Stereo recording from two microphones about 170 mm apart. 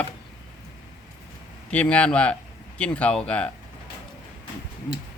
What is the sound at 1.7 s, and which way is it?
Speech, 5° left (ahead or behind).